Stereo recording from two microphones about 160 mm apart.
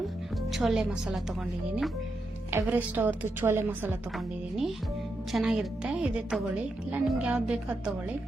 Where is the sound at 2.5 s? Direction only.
10° right (ahead or behind).